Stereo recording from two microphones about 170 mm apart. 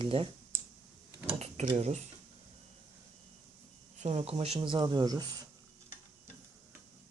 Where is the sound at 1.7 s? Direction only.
40° right (ahead or behind).